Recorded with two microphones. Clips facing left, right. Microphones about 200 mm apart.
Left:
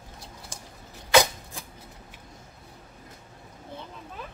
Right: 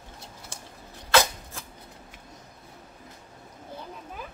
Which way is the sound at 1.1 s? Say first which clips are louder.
Left 2 dB; 15° left (ahead or behind).